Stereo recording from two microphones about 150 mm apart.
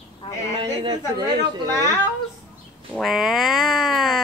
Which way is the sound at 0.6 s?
30° right (ahead or behind).